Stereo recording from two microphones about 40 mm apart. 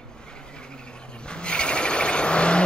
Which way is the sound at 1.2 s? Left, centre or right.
Left.